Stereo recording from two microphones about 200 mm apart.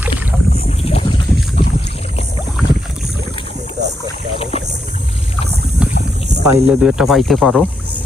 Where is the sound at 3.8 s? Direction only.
55° right (ahead or behind).